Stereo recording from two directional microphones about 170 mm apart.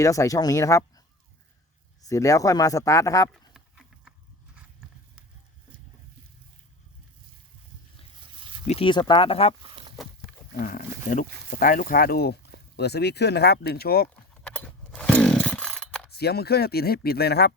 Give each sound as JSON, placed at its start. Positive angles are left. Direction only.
{"t": 0.0, "sound": "speech", "side_deg": 20}
{"t": 3.5, "sound": "a sound", "side_deg": -5}
{"t": 8.6, "sound": "speech", "side_deg": 40}
{"t": 8.9, "sound": "speech", "side_deg": 30}
{"t": 9.6, "sound": "a sound", "side_deg": -30}
{"t": 10.6, "sound": "speech", "side_deg": 55}
{"t": 14.4, "sound": "chainsaw", "side_deg": 5}
{"t": 16.1, "sound": "speech", "side_deg": 70}